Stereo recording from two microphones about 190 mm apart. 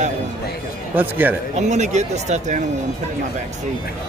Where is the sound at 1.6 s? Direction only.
35° right (ahead or behind).